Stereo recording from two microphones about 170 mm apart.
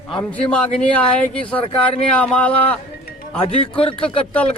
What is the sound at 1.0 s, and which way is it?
Speech, 5° left (ahead or behind).